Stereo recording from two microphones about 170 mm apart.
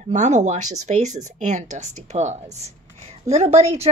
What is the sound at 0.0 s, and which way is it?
A woman's voice, 45° right (ahead or behind).